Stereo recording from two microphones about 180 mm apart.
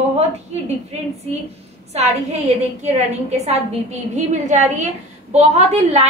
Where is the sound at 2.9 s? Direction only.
35° right (ahead or behind).